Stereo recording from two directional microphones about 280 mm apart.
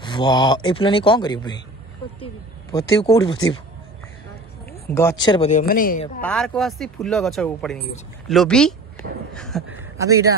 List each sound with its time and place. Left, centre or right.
0.0 s speech: centre
2.7 s speech: centre
4.9 s speech: centre; by 6.2 s left
6.2 s speech: centre
9.3 s a sound: centre
9.9 s speech: centre